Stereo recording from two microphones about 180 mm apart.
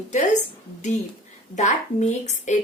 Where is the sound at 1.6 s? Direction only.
40° left (ahead or behind).